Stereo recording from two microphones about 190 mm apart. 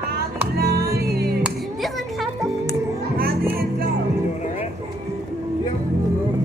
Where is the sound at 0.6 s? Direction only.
55° right (ahead or behind).